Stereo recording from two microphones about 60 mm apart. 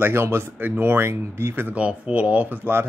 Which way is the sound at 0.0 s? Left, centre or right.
Right.